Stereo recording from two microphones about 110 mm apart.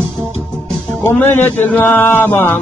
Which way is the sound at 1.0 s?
20° left (ahead or behind).